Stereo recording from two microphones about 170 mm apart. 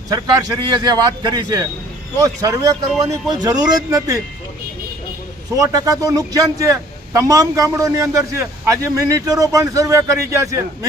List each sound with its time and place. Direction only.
0.1 s a man's voice: 20° right (ahead or behind)
5.5 s a man's voice: 20° right (ahead or behind)